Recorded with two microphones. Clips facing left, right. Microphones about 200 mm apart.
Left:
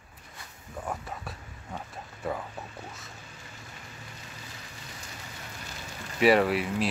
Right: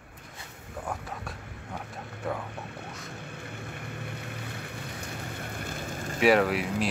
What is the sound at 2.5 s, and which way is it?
Whispering, 65° right (ahead or behind).